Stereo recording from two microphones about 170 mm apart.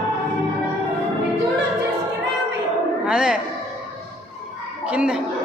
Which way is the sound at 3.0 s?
5° right (ahead or behind).